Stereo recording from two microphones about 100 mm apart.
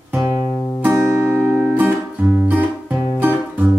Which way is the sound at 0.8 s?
10° right (ahead or behind).